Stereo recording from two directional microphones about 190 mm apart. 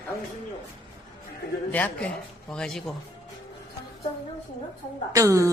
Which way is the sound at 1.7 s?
10° left (ahead or behind).